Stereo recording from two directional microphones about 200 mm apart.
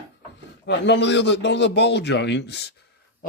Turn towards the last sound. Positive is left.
turn(degrees=45)  # may be behind; listen again after turning